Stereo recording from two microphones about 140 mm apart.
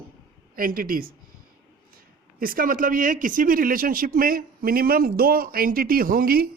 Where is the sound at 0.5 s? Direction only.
90° right.